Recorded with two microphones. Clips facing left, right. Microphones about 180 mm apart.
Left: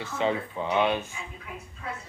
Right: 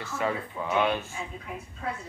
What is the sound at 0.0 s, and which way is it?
Speech, 25° left (ahead or behind).